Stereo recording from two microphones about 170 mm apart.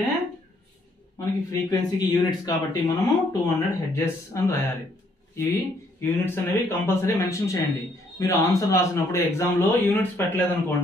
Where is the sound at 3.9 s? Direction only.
15° left (ahead or behind).